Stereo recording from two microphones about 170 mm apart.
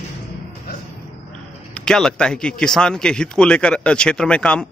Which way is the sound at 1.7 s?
5° left (ahead or behind).